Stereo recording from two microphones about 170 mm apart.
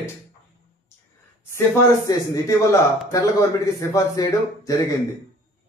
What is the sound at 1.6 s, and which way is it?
A man's voice, 20° left (ahead or behind).